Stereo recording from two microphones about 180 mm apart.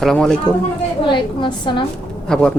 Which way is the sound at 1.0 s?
25° left (ahead or behind).